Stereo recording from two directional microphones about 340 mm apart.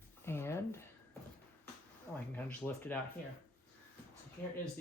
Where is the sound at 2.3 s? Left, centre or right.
Centre.